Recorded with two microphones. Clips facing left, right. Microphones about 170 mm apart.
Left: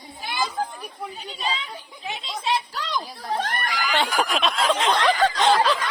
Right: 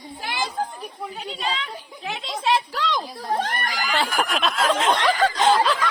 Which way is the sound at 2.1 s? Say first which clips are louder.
Right 3 dB; 90° right.